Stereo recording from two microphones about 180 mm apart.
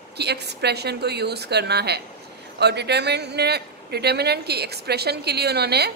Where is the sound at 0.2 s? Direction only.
65° right (ahead or behind).